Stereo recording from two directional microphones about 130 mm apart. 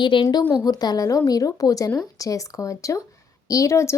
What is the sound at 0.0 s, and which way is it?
A woman's voice, 35° left (ahead or behind).